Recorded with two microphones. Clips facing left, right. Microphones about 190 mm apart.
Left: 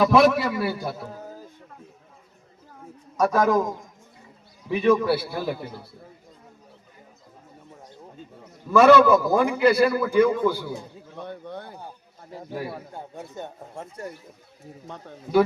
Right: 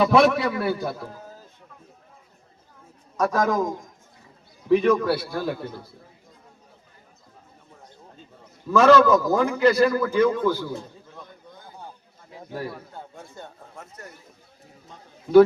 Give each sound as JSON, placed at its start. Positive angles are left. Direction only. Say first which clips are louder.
{"t": 0.0, "sound": "a man's voice", "louder": "even", "side_deg": 0}
{"t": 3.2, "sound": "a man's voice", "louder": "left 2 dB", "side_deg": 10}
{"t": 4.7, "sound": "a man's voice", "louder": "right 1 dB", "side_deg": 5}
{"t": 8.8, "sound": "a man's voice", "louder": "left 1 dB", "side_deg": 10}
{"t": 11.2, "sound": "a sound", "louder": "left 12 dB", "side_deg": 70}
{"t": 12.9, "sound": "a sound", "louder": "left 3 dB", "side_deg": 15}
{"t": 13.3, "sound": "speech", "louder": "left 5 dB", "side_deg": 25}
{"t": 14.8, "sound": "speech", "louder": "left 8 dB", "side_deg": 65}